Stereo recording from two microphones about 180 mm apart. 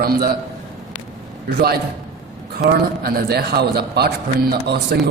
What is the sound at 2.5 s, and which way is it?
A man's voice, 55° right (ahead or behind).